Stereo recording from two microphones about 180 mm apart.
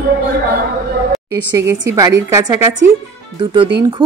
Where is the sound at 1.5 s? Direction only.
15° right (ahead or behind).